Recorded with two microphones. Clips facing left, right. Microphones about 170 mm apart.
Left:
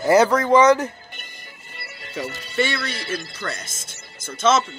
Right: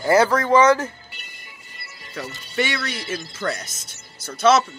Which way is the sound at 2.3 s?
75° left (ahead or behind).